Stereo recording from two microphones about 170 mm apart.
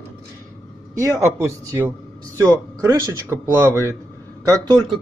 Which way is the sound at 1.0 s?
15° right (ahead or behind).